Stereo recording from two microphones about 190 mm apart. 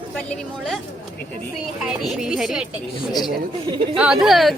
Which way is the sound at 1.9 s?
Centre (ahead or behind).